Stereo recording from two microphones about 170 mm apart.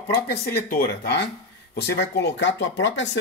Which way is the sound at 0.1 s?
65° left (ahead or behind).